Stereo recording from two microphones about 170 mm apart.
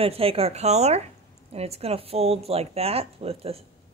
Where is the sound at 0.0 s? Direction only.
35° right (ahead or behind).